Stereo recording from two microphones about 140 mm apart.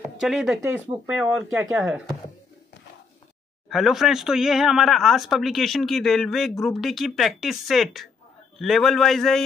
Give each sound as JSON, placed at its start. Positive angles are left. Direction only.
{"t": 0.2, "sound": "speech", "side_deg": -5}
{"t": 0.7, "sound": "speech", "side_deg": -20}
{"t": 1.8, "sound": "speech", "side_deg": -5}
{"t": 3.6, "sound": "speech", "side_deg": 0}